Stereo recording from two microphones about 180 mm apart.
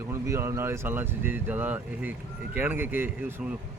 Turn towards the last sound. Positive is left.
turn(degrees=-10)  # may be behind; listen again after turning